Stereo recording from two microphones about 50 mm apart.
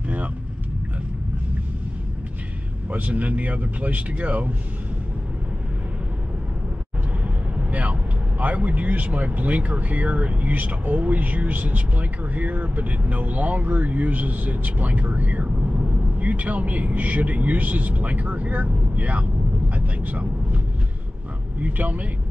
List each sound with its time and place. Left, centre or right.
2.9 s speech: right
7.5 s speech: right